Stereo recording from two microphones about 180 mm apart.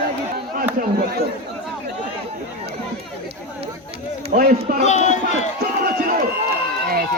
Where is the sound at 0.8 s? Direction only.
55° right (ahead or behind).